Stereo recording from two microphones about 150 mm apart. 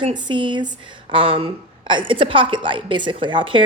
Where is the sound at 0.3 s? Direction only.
30° right (ahead or behind).